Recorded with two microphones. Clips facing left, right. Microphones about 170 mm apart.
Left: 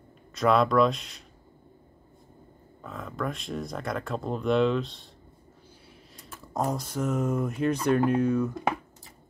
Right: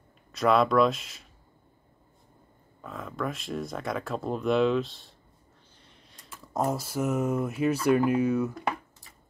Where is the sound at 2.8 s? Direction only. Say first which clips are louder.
Even; centre (ahead or behind).